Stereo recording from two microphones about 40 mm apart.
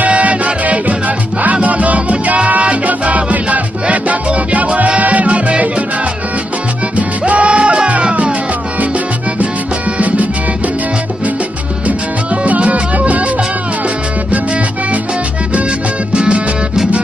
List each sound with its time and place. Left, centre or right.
0.0 s music: right
7.0 s music: right
9.9 s music: right
12.4 s music: right
16.1 s music: right